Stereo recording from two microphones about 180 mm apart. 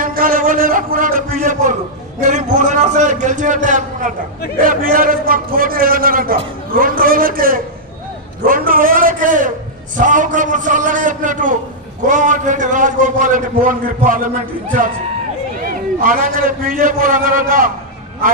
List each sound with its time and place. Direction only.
0.0 s a sound: 50° right (ahead or behind)
2.2 s a man's voice: 45° right (ahead or behind)
16.0 s a man's voice: 50° right (ahead or behind)